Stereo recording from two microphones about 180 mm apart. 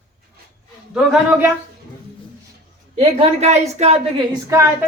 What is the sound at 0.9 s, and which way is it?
Speech, 10° right (ahead or behind).